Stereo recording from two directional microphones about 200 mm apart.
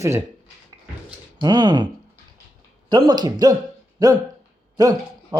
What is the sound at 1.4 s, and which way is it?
Speech, 20° right (ahead or behind).